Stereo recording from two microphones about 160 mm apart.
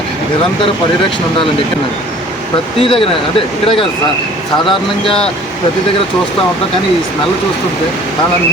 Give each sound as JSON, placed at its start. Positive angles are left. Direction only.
{"t": 2.7, "sound": "speech", "side_deg": 35}